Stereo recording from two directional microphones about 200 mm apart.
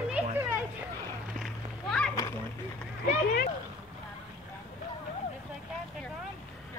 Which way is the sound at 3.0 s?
45° left (ahead or behind).